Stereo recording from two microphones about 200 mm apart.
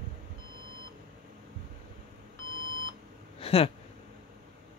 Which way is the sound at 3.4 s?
30° left (ahead or behind).